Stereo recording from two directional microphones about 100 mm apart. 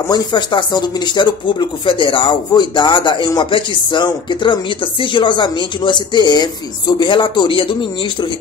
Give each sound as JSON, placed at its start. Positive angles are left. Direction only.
{"t": 0.1, "sound": "speech", "side_deg": 50}